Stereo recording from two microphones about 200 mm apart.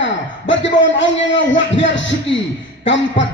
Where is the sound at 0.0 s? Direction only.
65° left (ahead or behind).